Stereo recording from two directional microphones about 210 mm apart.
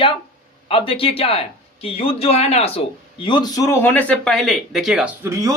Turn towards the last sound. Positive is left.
turn(degrees=-15)  # may be behind; listen again after turning